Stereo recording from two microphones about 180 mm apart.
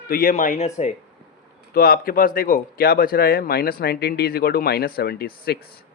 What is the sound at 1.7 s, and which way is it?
Speech, 55° left (ahead or behind).